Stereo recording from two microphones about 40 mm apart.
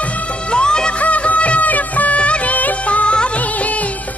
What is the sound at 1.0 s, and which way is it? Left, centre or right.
Music of bollywood, left.